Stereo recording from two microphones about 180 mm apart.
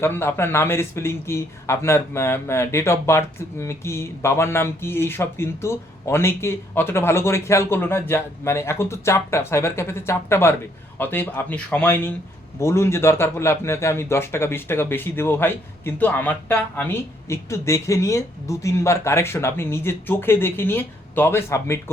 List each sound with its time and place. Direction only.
0.0 s speech: 15° left (ahead or behind)